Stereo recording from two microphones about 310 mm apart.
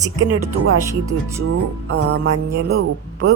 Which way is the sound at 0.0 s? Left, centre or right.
Right.